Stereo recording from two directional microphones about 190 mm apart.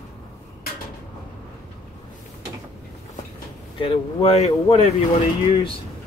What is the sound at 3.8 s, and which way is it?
Speech, 30° left (ahead or behind).